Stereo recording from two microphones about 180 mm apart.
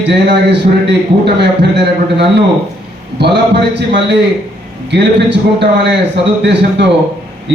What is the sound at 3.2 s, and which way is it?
A man's voice, 65° right (ahead or behind).